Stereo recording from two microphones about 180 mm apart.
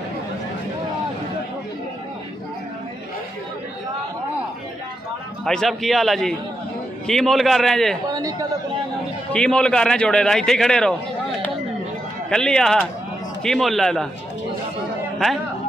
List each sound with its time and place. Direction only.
5.4 s a man's voice: centre (ahead or behind)
8.1 s a sound: 20° right (ahead or behind)
9.3 s a man's voice: 5° left (ahead or behind)
12.3 s a man's voice: 5° left (ahead or behind)